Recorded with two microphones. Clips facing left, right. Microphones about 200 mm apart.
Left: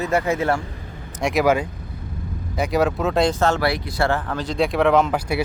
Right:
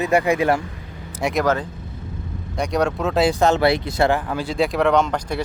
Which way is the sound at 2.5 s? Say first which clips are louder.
Left 1 dB; 5° left (ahead or behind).